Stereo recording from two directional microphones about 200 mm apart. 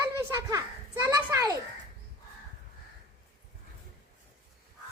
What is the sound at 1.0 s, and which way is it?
Speech, 20° right (ahead or behind).